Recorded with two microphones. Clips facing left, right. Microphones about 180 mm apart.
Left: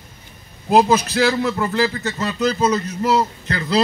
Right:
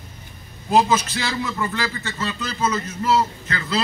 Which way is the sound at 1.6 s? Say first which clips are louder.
Left 6 dB; 35° left (ahead or behind).